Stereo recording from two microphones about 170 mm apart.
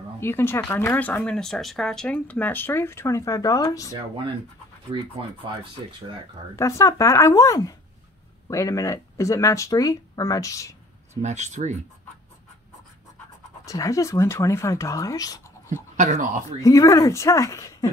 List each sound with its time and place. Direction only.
0.2 s speech: 15° left (ahead or behind)
4.9 s speech: 30° right (ahead or behind)
6.5 s speech: 20° left (ahead or behind)
11.2 s speech: 45° right (ahead or behind)
13.7 s speech: 20° left (ahead or behind)
16.0 s speech: 45° right (ahead or behind)
16.6 s speech: 20° left (ahead or behind)